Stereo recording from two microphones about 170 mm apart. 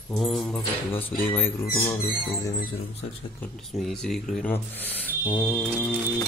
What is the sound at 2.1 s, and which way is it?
Music, 20° left (ahead or behind).